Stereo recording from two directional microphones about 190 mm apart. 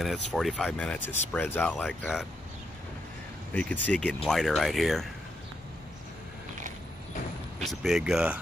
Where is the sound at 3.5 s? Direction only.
5° left (ahead or behind).